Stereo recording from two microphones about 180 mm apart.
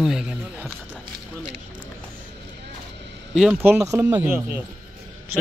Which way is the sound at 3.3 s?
10° right (ahead or behind).